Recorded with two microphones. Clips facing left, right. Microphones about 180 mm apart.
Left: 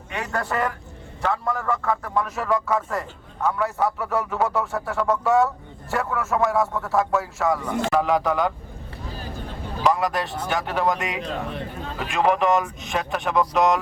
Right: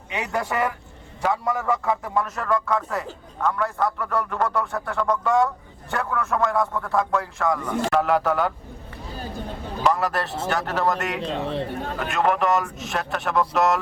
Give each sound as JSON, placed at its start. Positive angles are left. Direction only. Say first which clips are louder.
{"t": 0.1, "sound": "a man's voice", "louder": "right 1 dB", "side_deg": -15}
{"t": 2.1, "sound": "a man's voice", "louder": "left 2 dB", "side_deg": 0}
{"t": 9.8, "sound": "a man's voice", "louder": "left 1 dB", "side_deg": 0}
{"t": 11.2, "sound": "a man's voice", "louder": "right 3 dB", "side_deg": -30}
{"t": 12.1, "sound": "a man's voice", "louder": "left 2 dB", "side_deg": 0}